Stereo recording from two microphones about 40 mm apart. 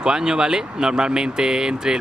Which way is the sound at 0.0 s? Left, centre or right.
Centre.